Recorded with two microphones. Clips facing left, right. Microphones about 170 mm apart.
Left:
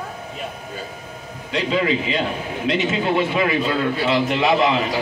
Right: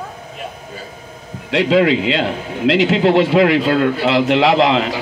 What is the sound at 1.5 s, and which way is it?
A man's voice, 85° right.